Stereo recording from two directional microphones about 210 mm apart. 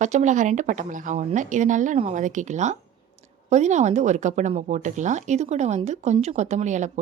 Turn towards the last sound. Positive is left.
turn(degrees=-35)  # may be behind; listen again after turning